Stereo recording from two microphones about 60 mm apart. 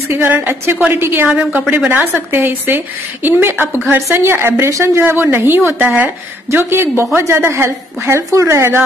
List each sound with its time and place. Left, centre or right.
0.3 s a woman's voice: right
1.3 s a woman's voice: centre
1.9 s a woman's voice: right